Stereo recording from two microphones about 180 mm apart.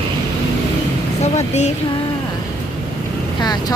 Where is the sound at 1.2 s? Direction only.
40° left (ahead or behind).